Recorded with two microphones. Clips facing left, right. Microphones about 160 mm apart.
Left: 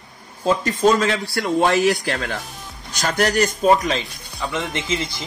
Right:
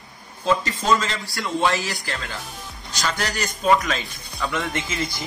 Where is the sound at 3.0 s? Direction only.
50° left (ahead or behind).